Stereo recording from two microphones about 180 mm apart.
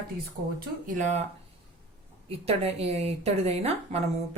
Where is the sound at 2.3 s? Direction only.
35° right (ahead or behind).